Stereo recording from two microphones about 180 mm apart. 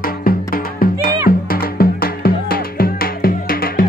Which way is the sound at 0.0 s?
55° left (ahead or behind).